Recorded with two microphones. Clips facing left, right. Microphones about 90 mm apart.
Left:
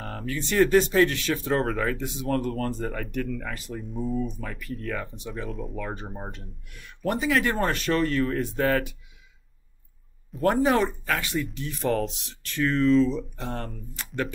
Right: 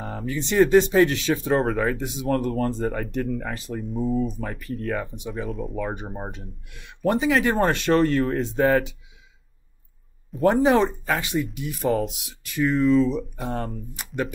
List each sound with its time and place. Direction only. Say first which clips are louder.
0.0 s a sound: right 3 dB; 5° right (ahead or behind)
0.3 s speech: right 3 dB; 20° right (ahead or behind)
1.6 s speech: right 3 dB; 5° right (ahead or behind)
2.0 s speech: right 3 dB; 20° right (ahead or behind)
3.2 s speech: right 3 dB; 35° right (ahead or behind)
3.8 s speech: right 5 dB; centre (ahead or behind)
4.2 s speech: right 4 dB; 35° right (ahead or behind)
4.9 s speech: right 4 dB; 15° right (ahead or behind)
5.3 s speech: right 4 dB; centre (ahead or behind)
5.8 s speech: right 4 dB; 15° right (ahead or behind)
10.4 s speech: right 4 dB; 20° right (ahead or behind)